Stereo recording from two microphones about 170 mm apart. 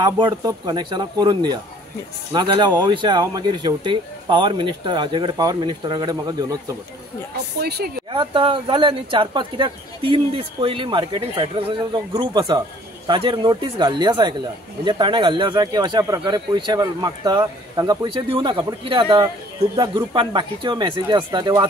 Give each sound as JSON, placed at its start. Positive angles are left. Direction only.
{"t": 0.0, "sound": "speech", "side_deg": -25}
{"t": 7.3, "sound": "speech", "side_deg": -70}
{"t": 8.1, "sound": "speech", "side_deg": -30}